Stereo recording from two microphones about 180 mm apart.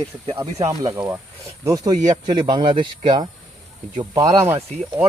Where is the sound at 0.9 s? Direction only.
10° right (ahead or behind).